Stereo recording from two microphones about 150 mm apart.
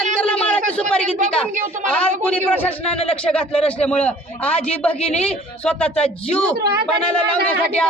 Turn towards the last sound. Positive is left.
turn(degrees=10)  # may be behind; listen again after turning